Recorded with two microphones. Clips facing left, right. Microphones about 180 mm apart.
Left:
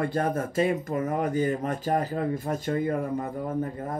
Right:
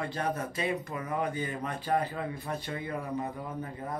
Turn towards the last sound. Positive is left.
turn(degrees=45)  # may be behind; listen again after turning